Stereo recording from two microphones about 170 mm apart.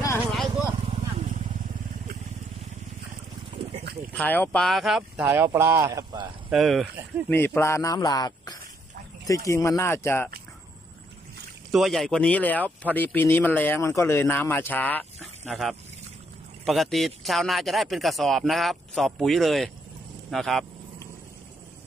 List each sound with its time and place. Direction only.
0.8 s vehicle: 35° right (ahead or behind)
4.1 s speech: 10° left (ahead or behind)
5.2 s speech: 15° right (ahead or behind)
6.5 s speech: centre (ahead or behind)
7.2 s speech: 10° left (ahead or behind)
11.7 s speech: centre (ahead or behind)
15.1 s duck: centre (ahead or behind)
16.6 s speech: centre (ahead or behind)